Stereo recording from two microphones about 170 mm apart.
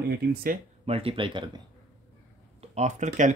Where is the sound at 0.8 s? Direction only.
35° right (ahead or behind).